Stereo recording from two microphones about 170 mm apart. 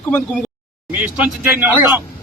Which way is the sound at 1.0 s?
10° right (ahead or behind).